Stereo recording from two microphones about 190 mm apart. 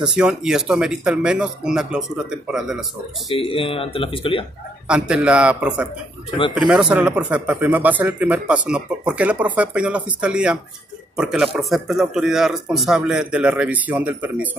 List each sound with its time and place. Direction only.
0.0 s speech: 5° right (ahead or behind)
3.3 s speech: 30° left (ahead or behind)
4.8 s speech: 5° right (ahead or behind)